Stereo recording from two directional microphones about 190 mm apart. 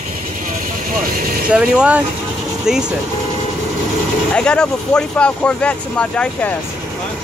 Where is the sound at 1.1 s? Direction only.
50° right (ahead or behind).